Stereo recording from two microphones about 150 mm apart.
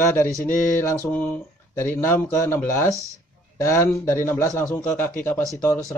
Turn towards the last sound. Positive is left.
turn(degrees=20)  # may be behind; listen again after turning